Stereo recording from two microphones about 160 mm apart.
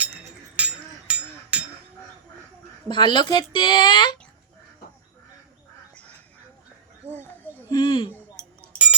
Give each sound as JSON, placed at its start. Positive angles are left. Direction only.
{"t": 0.0, "sound": "a sound", "side_deg": -10}
{"t": 2.9, "sound": "a woman's voice", "side_deg": 30}
{"t": 7.7, "sound": "speech", "side_deg": 30}
{"t": 8.6, "sound": "chink", "side_deg": -10}